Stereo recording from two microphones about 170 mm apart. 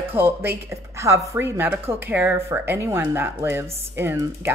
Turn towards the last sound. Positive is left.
turn(degrees=-15)  # may be behind; listen again after turning